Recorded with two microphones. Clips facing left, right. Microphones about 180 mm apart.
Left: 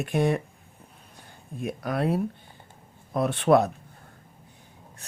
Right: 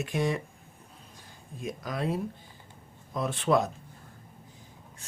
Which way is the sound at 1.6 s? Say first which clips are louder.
Left 5 dB; 60° left (ahead or behind).